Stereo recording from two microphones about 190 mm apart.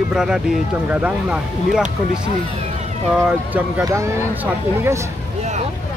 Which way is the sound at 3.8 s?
15° right (ahead or behind).